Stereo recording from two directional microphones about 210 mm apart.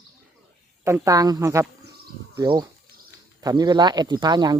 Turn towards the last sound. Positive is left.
turn(degrees=-20)  # may be behind; listen again after turning